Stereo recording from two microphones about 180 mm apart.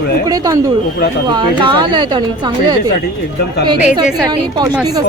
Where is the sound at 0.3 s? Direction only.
20° right (ahead or behind).